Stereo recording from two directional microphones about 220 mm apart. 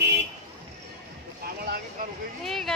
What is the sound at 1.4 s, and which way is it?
Speech, 45° right (ahead or behind).